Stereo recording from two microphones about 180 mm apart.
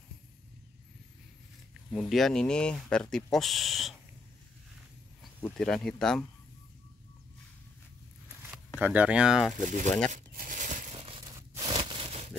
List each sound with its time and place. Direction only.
1.7 s speech: centre (ahead or behind)
5.4 s speech: 5° left (ahead or behind)
8.8 s speech: 10° right (ahead or behind)
9.6 s speech: 45° right (ahead or behind)
10.1 s tearing: 50° right (ahead or behind); by 11.3 s 30° right (ahead or behind)
11.3 s a sound: 15° right (ahead or behind)
11.7 s a sound: 30° right (ahead or behind)